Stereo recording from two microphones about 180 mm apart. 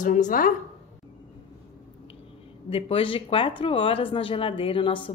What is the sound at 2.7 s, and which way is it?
Speech, 30° left (ahead or behind).